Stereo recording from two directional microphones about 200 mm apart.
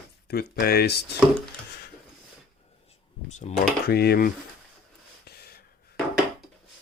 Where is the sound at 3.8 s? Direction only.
55° left (ahead or behind).